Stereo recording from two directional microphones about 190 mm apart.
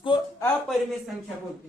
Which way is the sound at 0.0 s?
25° left (ahead or behind).